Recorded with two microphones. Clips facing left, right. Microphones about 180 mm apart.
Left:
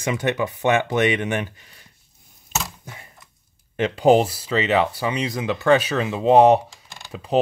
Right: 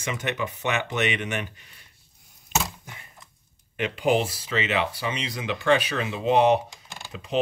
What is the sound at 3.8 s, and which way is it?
Speech, 35° left (ahead or behind).